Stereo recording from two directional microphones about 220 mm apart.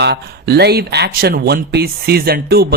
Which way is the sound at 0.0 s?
45° right (ahead or behind).